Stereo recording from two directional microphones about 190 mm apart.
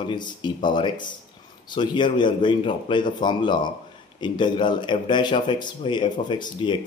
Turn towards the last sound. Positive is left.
turn(degrees=25)  # may be behind; listen again after turning